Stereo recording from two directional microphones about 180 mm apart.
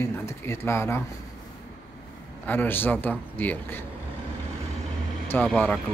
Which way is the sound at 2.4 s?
10° left (ahead or behind).